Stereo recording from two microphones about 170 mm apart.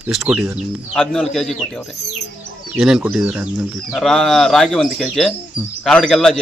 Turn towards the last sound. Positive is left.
turn(degrees=5)  # may be behind; listen again after turning